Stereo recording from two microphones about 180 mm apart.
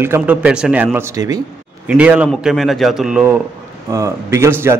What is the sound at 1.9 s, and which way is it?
Speech, 5° right (ahead or behind).